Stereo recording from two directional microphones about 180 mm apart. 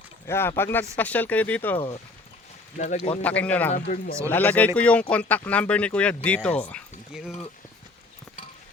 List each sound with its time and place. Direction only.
0.3 s speech: 15° left (ahead or behind)
2.7 s speech: 45° left (ahead or behind)
3.2 s speech: 5° left (ahead or behind)
3.7 s speech: 50° left (ahead or behind)
4.3 s speech: 10° left (ahead or behind)
7.1 s speech: 5° right (ahead or behind)